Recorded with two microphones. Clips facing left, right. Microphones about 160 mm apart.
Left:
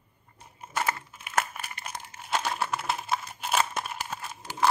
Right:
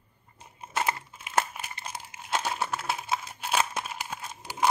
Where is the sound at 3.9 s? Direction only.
15° right (ahead or behind).